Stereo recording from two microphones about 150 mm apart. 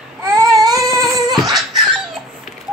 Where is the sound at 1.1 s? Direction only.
Centre (ahead or behind).